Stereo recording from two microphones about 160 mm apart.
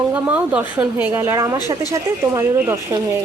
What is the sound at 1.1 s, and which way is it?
Speech, 20° right (ahead or behind).